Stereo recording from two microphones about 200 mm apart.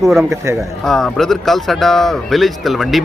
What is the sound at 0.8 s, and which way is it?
Speech, centre (ahead or behind).